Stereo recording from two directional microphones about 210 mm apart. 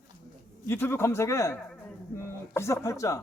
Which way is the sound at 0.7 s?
10° left (ahead or behind).